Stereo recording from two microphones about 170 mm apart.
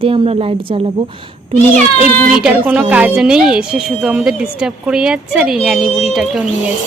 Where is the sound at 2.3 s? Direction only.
10° right (ahead or behind).